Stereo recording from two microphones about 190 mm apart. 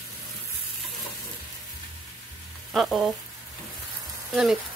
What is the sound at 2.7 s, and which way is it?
Speech, centre (ahead or behind).